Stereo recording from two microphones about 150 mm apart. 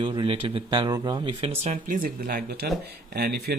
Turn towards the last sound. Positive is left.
turn(degrees=-90)